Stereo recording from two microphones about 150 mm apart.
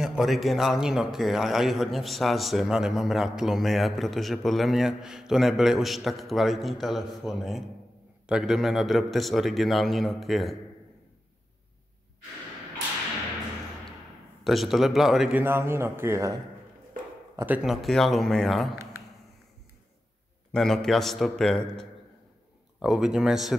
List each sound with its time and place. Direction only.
0.0 s a man's voice: centre (ahead or behind)
14.4 s a man's voice: centre (ahead or behind)
15.4 s a man's voice: 15° right (ahead or behind)
17.4 s a man's voice: 10° right (ahead or behind)
20.5 s a man's voice: 5° left (ahead or behind)